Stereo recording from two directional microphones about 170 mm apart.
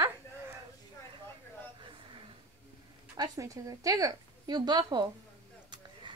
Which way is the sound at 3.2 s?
20° right (ahead or behind).